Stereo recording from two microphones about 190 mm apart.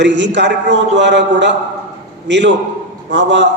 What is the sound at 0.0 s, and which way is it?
A man's voice, 65° right (ahead or behind).